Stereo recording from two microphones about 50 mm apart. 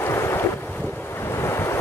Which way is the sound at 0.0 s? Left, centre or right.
Left.